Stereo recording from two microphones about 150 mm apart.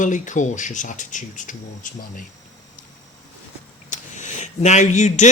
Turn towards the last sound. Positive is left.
turn(degrees=50)  # may be behind; listen again after turning